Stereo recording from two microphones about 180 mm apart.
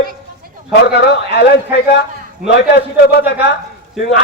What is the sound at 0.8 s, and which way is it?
A man's voice, 65° left (ahead or behind).